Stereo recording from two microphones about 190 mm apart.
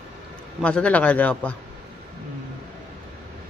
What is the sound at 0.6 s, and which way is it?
Speech, 5° left (ahead or behind).